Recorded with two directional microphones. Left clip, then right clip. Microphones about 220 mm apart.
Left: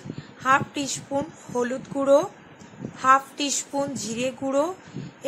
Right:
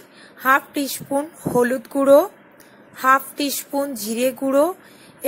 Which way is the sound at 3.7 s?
Centre (ahead or behind).